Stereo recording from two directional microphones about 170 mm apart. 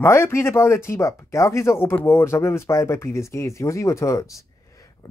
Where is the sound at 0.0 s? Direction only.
15° left (ahead or behind).